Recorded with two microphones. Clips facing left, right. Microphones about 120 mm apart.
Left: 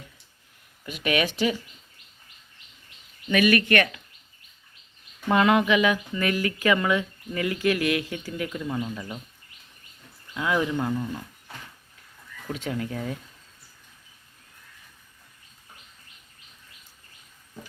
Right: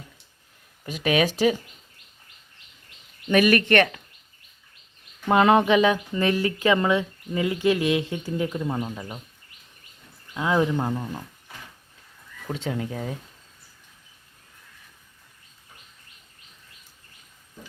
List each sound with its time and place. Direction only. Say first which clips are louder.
0.9 s speech: right 3 dB; 35° right (ahead or behind)
3.2 s speech: right 2 dB; 40° right (ahead or behind)
5.3 s speech: right 3 dB; 30° right (ahead or behind)
10.3 s speech: right 3 dB; 30° right (ahead or behind)
12.5 s speech: right 1 dB; 25° right (ahead or behind)